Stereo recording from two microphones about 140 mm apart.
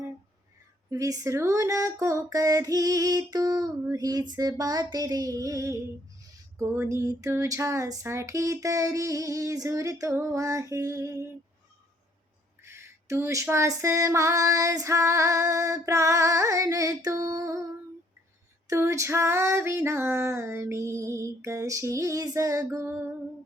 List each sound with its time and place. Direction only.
0.9 s female singing: 25° right (ahead or behind)
12.6 s female singing: 20° right (ahead or behind)
18.7 s female singing: 20° right (ahead or behind)